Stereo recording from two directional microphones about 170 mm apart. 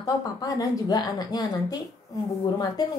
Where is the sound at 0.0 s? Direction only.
20° left (ahead or behind).